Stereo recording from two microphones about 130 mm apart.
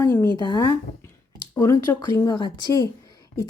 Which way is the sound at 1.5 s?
20° left (ahead or behind).